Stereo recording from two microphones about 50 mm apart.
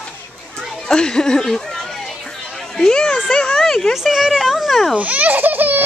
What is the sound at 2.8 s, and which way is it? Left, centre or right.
A woman's voice, centre.